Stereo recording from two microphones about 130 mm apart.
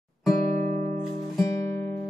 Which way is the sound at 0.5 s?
65° right (ahead or behind).